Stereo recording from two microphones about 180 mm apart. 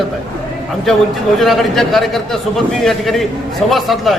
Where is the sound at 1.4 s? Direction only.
Centre (ahead or behind).